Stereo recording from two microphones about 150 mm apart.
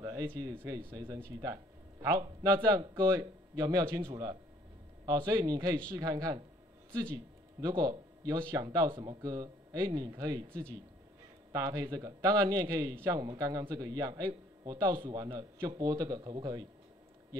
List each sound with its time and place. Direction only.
0.0 s speech: 25° right (ahead or behind)
7.6 s speech: 30° right (ahead or behind)